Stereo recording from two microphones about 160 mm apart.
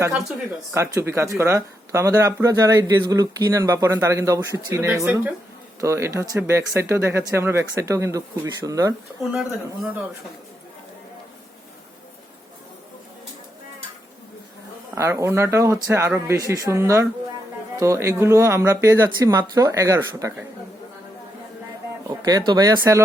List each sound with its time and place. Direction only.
0.7 s speech: 15° right (ahead or behind)
9.3 s speech: 5° right (ahead or behind)
14.9 s speech: 15° right (ahead or behind)
22.2 s speech: 25° right (ahead or behind)